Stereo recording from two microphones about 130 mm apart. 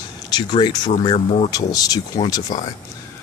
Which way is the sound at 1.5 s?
30° left (ahead or behind).